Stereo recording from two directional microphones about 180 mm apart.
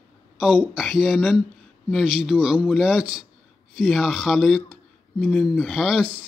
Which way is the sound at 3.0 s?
30° right (ahead or behind).